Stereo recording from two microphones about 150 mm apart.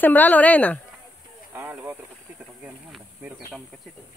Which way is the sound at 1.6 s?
15° right (ahead or behind).